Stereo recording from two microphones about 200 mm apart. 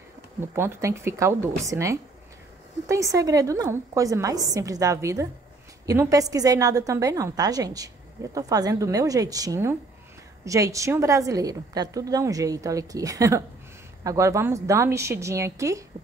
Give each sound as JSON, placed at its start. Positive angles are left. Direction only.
{"t": 0.4, "sound": "a woman's voice", "side_deg": -10}